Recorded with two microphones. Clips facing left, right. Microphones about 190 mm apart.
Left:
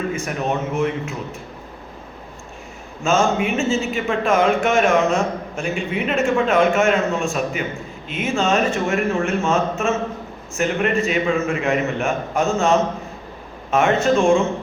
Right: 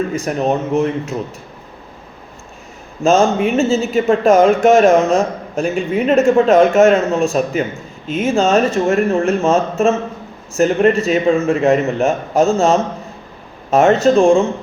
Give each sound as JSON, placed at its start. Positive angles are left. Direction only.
{"t": 0.1, "sound": "speech", "side_deg": -35}
{"t": 3.0, "sound": "speech", "side_deg": -35}